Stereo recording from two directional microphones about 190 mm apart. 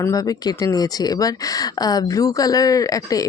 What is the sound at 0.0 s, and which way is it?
Speech, 20° left (ahead or behind).